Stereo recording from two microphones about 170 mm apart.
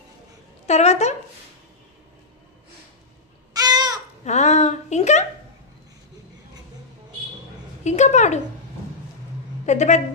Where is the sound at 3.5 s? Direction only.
25° right (ahead or behind).